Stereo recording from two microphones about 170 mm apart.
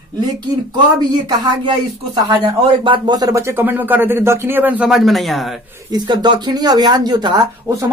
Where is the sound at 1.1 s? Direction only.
25° right (ahead or behind).